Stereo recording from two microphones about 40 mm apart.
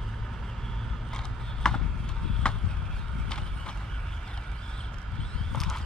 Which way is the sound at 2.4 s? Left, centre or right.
Left.